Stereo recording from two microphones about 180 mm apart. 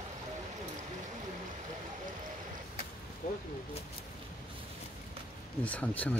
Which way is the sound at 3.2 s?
50° left (ahead or behind).